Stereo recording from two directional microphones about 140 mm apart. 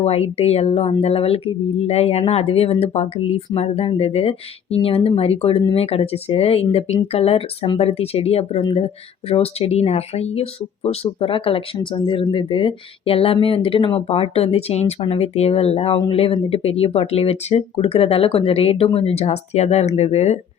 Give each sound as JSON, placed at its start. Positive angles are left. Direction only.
{"t": 0.0, "sound": "speech", "side_deg": 45}